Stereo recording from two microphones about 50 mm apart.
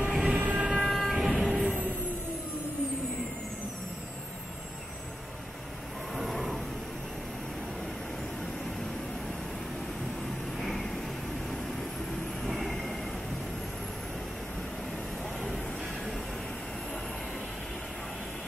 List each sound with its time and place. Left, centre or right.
0.0 s train: centre
0.5 s vehicle: centre
0.7 s train: centre
1.1 s vehicle: centre
1.6 s music: right
6.1 s wild animals: centre
10.6 s vehicle: centre
12.1 s vehicle: centre
15.4 s vehicle: centre